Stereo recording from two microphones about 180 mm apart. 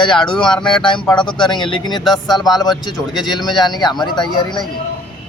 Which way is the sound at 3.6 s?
25° left (ahead or behind).